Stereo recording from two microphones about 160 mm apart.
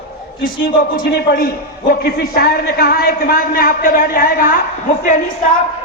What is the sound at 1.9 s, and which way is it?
A man's voice, 80° left.